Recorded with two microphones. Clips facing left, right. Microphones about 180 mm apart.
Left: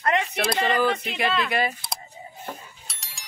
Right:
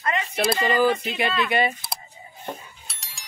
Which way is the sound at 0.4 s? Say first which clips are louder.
Right 6 dB; centre (ahead or behind).